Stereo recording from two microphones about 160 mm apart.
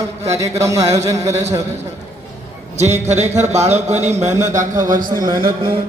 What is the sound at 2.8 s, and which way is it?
A man's voice, 45° right (ahead or behind).